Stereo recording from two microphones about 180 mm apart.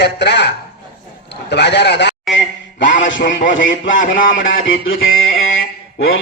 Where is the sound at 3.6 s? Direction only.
50° left (ahead or behind).